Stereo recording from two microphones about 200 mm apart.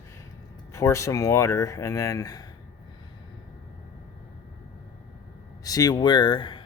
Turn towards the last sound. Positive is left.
turn(degrees=25)  # may be behind; listen again after turning